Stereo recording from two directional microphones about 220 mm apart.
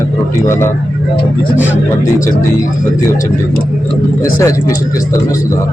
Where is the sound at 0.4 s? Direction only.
10° left (ahead or behind).